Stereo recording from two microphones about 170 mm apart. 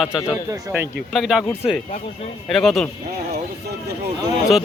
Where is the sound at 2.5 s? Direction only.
Centre (ahead or behind).